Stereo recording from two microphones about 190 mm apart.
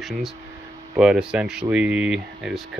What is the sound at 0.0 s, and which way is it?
Speech, centre (ahead or behind).